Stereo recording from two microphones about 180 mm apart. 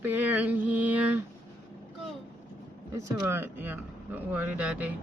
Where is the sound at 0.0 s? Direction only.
10° right (ahead or behind).